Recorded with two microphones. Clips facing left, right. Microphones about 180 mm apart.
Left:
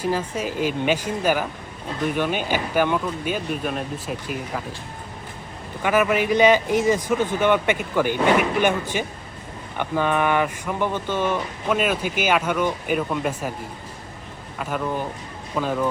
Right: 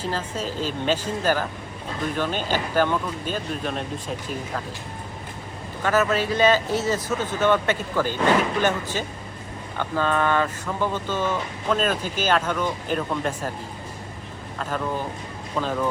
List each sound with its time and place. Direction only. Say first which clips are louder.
0.0 s speech: left 4 dB; 10° left (ahead or behind)
5.8 s speech: left 2 dB; 10° left (ahead or behind)
14.6 s speech: left 1 dB; 10° left (ahead or behind)